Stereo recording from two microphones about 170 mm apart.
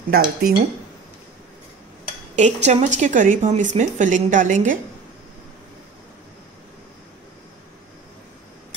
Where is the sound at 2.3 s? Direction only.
45° right (ahead or behind).